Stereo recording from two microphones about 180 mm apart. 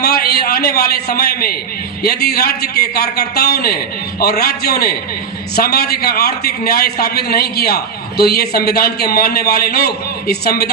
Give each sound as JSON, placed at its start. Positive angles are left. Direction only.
{"t": 0.0, "sound": "a man's voice", "side_deg": 60}